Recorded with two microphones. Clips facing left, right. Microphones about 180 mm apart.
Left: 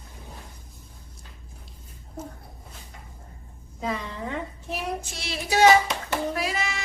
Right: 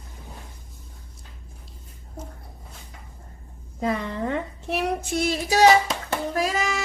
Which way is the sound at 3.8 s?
55° right (ahead or behind).